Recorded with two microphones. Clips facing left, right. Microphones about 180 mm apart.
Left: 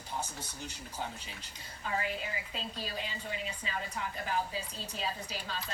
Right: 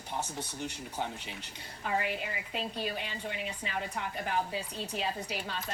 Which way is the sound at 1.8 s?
65° right (ahead or behind).